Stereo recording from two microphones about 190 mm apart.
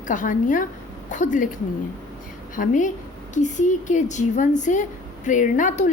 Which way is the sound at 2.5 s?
45° left (ahead or behind).